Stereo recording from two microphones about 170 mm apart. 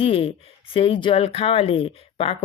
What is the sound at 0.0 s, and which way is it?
Speech, 35° left (ahead or behind).